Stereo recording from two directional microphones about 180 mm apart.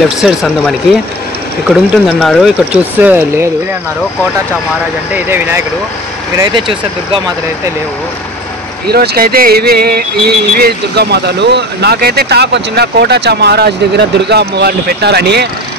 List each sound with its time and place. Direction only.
0.2 s speech: centre (ahead or behind)
5.1 s speech: 10° right (ahead or behind)
6.3 s speech: 25° right (ahead or behind)
8.8 s speech: 60° right (ahead or behind)